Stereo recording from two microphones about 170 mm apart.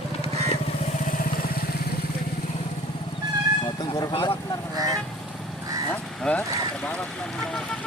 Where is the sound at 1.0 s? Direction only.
55° left (ahead or behind).